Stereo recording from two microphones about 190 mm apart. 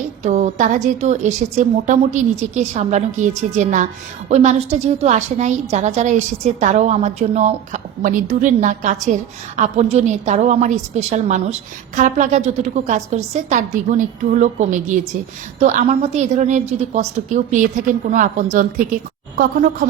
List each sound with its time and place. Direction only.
0.3 s a woman's voice: 40° right (ahead or behind)